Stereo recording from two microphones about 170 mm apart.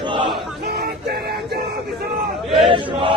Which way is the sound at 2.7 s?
30° right (ahead or behind).